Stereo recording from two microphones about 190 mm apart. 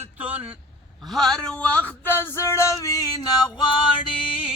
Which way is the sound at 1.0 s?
Centre (ahead or behind).